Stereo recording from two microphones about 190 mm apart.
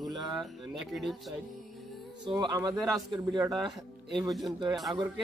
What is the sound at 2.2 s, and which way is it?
A man's voice, 20° right (ahead or behind).